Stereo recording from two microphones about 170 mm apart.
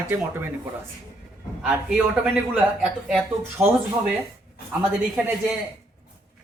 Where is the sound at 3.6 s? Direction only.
15° right (ahead or behind).